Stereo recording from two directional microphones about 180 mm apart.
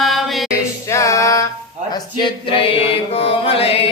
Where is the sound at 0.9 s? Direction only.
15° left (ahead or behind).